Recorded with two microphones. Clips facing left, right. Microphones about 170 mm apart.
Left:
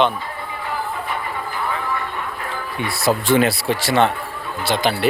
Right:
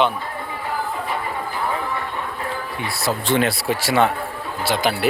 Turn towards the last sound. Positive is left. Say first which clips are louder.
# left 1 dB
turn(degrees=-5)  # may be behind; listen again after turning